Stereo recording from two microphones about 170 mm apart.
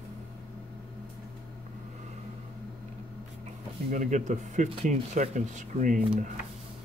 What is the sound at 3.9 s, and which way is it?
Speech, 45° right (ahead or behind).